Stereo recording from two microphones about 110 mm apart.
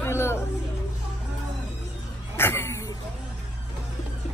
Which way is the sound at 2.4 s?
20° left (ahead or behind).